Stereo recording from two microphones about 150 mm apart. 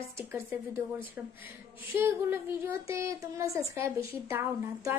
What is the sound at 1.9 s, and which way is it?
A woman's voice, 15° right (ahead or behind).